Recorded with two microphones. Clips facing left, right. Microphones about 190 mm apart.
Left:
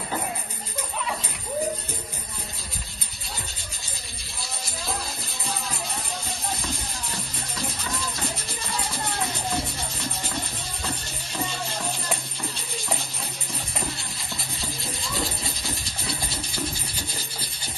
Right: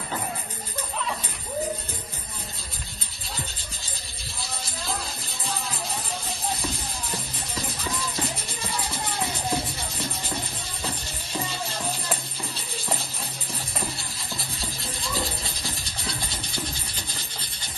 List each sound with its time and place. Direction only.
4.4 s music: centre (ahead or behind)
8.5 s music: centre (ahead or behind)
12.7 s music: centre (ahead or behind)
13.7 s rub: centre (ahead or behind)
17.1 s rub: 30° left (ahead or behind)